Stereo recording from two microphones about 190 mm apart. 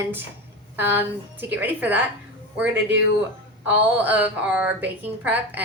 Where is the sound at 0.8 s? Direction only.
10° right (ahead or behind).